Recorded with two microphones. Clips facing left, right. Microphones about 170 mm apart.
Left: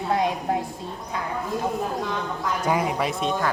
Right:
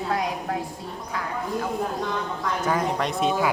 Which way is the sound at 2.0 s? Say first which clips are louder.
Even; 5° left (ahead or behind).